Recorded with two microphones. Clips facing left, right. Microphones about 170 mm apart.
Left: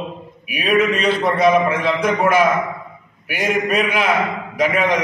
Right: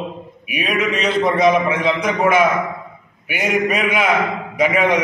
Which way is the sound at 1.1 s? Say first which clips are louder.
Right 1 dB; 5° left (ahead or behind).